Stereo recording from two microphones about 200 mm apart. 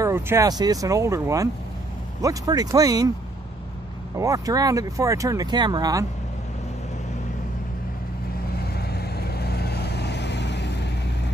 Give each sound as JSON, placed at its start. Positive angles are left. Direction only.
{"t": 0.0, "sound": "speech", "side_deg": -15}
{"t": 4.2, "sound": "speech", "side_deg": -15}
{"t": 8.5, "sound": "vehicle", "side_deg": 50}